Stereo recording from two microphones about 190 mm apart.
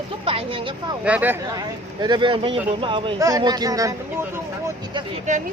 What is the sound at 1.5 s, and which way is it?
Speech, 20° right (ahead or behind).